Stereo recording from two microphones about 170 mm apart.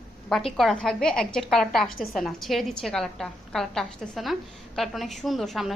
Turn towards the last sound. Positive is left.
turn(degrees=0)  # may be behind; listen again after turning